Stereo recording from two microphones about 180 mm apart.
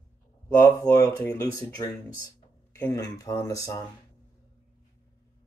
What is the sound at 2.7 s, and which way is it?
Speech, 15° left (ahead or behind).